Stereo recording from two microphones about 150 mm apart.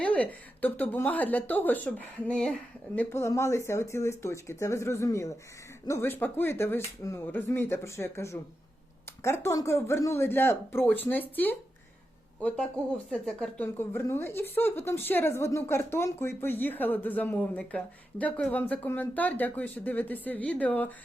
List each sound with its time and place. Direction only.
0.0 s a woman's voice: 10° left (ahead or behind)
13.7 s a woman's voice: 15° left (ahead or behind)